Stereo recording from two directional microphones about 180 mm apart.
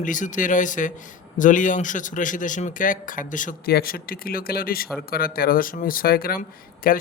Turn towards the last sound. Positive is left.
turn(degrees=55)  # may be behind; listen again after turning